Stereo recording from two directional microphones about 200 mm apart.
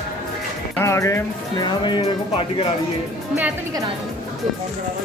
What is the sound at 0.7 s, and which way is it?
Speech, 15° left (ahead or behind).